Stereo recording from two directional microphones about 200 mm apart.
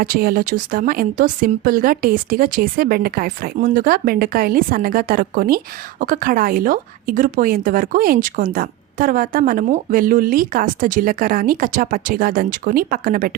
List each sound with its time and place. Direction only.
0.0 s a woman's voice: 45° right (ahead or behind)